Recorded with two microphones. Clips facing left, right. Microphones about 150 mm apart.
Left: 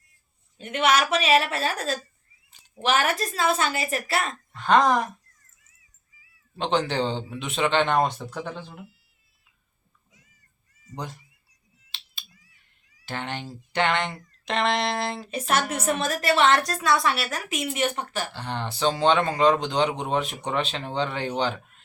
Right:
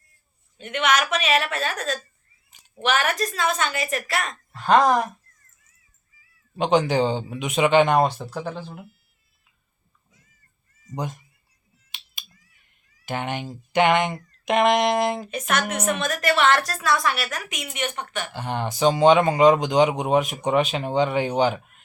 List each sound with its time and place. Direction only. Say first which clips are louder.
0.6 s a woman's voice: even; 35° left (ahead or behind)
4.5 s speech: right 2 dB; 5° right (ahead or behind)
6.6 s speech: right 5 dB; 15° right (ahead or behind)
10.9 s speech: right 5 dB; 20° right (ahead or behind)
11.9 s finger snapping: right 1 dB; 15° right (ahead or behind)
13.1 s speech: right 4 dB; 15° right (ahead or behind)
15.3 s a woman's voice: even; 30° left (ahead or behind)
18.3 s speech: right 4 dB; 15° right (ahead or behind)